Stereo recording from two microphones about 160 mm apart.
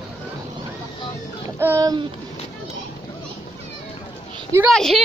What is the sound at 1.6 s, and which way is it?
Speech, 20° right (ahead or behind).